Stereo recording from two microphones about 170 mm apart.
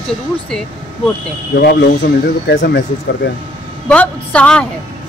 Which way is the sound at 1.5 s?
85° left.